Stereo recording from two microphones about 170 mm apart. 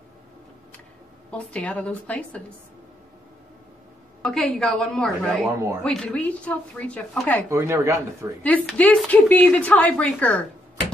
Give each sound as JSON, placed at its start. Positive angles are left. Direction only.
{"t": 1.3, "sound": "speech", "side_deg": 5}
{"t": 4.2, "sound": "a woman's voice", "side_deg": 5}
{"t": 7.4, "sound": "speech", "side_deg": -15}
{"t": 8.4, "sound": "speech", "side_deg": 10}